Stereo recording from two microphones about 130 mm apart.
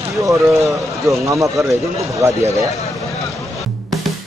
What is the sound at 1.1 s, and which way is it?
Speech, 25° right (ahead or behind).